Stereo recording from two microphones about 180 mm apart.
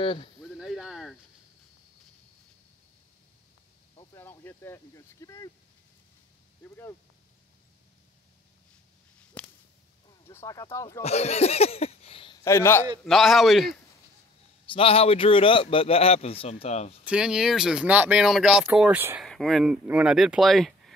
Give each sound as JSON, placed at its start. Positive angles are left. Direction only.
{"t": 0.0, "sound": "speech", "side_deg": 30}
{"t": 0.6, "sound": "a sound", "side_deg": -5}
{"t": 3.9, "sound": "a sound", "side_deg": 25}
{"t": 4.2, "sound": "speech", "side_deg": 10}
{"t": 6.6, "sound": "speech", "side_deg": 15}
{"t": 9.4, "sound": "whip", "side_deg": 5}
{"t": 10.2, "sound": "speech", "side_deg": 15}
{"t": 11.0, "sound": "speech", "side_deg": 35}
{"t": 12.4, "sound": "speech", "side_deg": 15}
{"t": 13.0, "sound": "speech", "side_deg": 0}
{"t": 14.7, "sound": "speech", "side_deg": 30}
{"t": 17.0, "sound": "speech", "side_deg": -5}
{"t": 19.2, "sound": "speech", "side_deg": 0}